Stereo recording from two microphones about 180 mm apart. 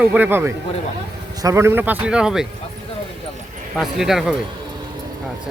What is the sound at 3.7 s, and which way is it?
Speech, centre (ahead or behind).